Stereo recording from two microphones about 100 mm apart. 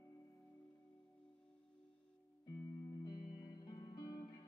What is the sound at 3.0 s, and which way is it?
Music, 40° left (ahead or behind).